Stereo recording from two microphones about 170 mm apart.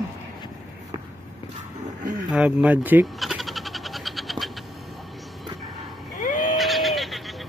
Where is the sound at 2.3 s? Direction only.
10° right (ahead or behind).